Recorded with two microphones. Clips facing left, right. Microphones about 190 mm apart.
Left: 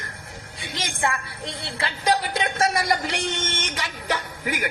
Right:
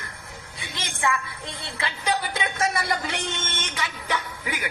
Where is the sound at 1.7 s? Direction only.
40° left (ahead or behind).